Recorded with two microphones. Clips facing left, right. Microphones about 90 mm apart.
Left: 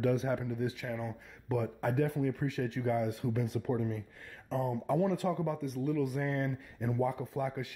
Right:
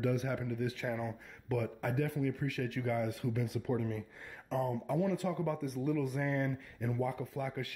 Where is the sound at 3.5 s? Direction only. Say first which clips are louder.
Left 3 dB; 45° left (ahead or behind).